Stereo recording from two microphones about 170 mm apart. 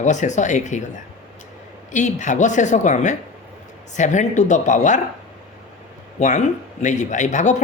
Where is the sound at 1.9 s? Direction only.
45° left (ahead or behind).